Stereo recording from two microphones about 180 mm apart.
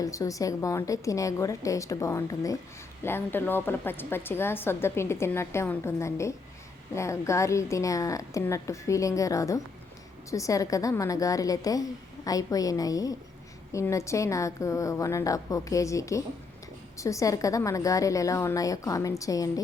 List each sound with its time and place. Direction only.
0.0 s a woman's voice: 20° left (ahead or behind)